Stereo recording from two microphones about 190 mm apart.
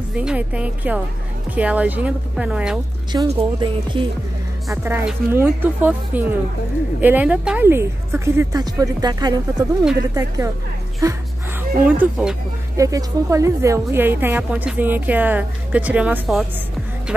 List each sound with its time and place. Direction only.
0.1 s a woman's voice: 5° right (ahead or behind)
3.3 s speech: 25° right (ahead or behind)
4.6 s a woman's voice: 10° right (ahead or behind)
11.8 s a woman's voice: 5° right (ahead or behind)
12.7 s a woman's voice: 15° right (ahead or behind)